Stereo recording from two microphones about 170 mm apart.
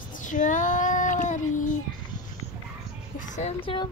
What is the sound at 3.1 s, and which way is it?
Speech, 45° left (ahead or behind).